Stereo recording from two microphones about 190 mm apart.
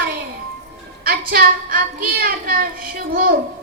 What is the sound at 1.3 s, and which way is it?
Speech, 50° right (ahead or behind).